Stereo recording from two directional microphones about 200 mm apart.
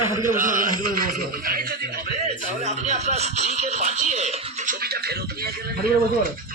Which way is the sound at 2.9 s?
35° right (ahead or behind).